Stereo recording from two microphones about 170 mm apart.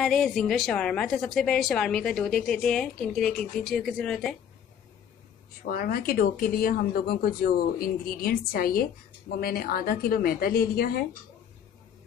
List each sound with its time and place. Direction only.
0.0 s a woman's voice: centre (ahead or behind)
5.7 s speech: 60° left (ahead or behind)